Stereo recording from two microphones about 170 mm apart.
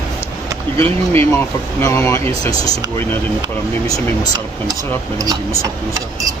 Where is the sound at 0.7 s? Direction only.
15° left (ahead or behind).